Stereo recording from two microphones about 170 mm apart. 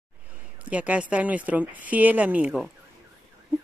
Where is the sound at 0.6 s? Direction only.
10° right (ahead or behind).